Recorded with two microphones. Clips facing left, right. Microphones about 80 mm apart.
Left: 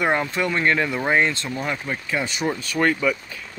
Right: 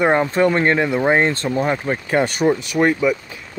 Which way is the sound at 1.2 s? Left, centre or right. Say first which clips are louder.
Right 5 dB; right.